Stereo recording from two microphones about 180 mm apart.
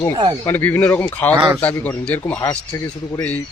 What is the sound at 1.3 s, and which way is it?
Speech, 15° right (ahead or behind).